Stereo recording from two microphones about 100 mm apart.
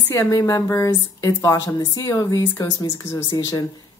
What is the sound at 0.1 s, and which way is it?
A woman's voice, 30° left (ahead or behind).